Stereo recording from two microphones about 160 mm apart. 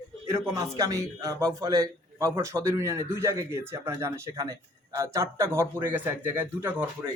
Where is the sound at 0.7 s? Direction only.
20° right (ahead or behind).